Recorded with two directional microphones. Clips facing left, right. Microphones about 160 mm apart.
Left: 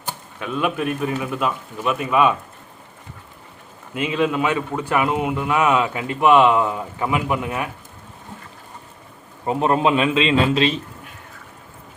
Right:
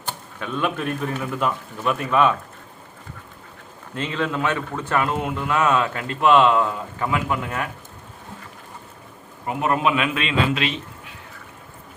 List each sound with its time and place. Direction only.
0.3 s a man's voice: 10° left (ahead or behind)
3.9 s a man's voice: 10° left (ahead or behind)
9.5 s a man's voice: 30° left (ahead or behind)